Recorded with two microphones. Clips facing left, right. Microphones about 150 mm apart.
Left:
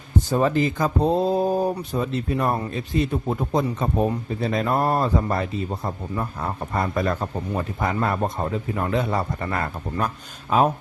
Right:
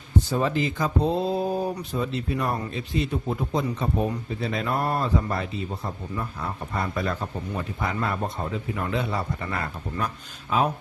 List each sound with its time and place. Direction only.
0.3 s speech: 45° left (ahead or behind)